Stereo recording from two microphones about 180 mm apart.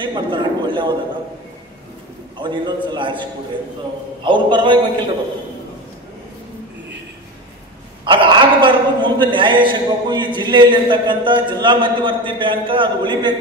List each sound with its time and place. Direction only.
0.0 s a man's voice: 25° right (ahead or behind)
2.3 s a man's voice: 25° right (ahead or behind)
8.0 s a man's voice: 25° right (ahead or behind)